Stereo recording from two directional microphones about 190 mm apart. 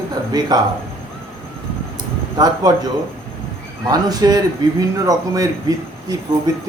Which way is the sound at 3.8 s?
20° right (ahead or behind).